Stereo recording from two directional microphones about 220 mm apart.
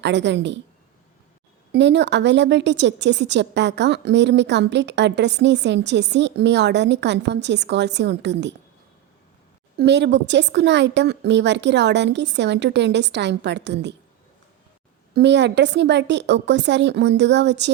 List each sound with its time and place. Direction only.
0.0 s a woman's voice: 55° right (ahead or behind)
1.7 s a woman's voice: 50° right (ahead or behind)
9.7 s a woman's voice: 50° right (ahead or behind)
15.1 s a woman's voice: 50° right (ahead or behind)